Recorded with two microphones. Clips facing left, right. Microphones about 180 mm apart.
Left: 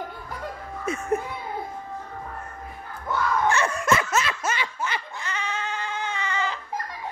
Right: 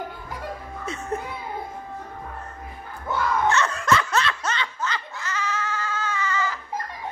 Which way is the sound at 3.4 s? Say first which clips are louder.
Even; 15° left (ahead or behind).